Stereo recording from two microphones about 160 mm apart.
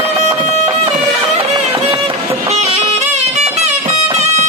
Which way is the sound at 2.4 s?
45° right (ahead or behind).